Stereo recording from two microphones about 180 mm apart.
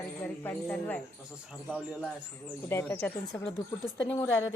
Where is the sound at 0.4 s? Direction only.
10° left (ahead or behind).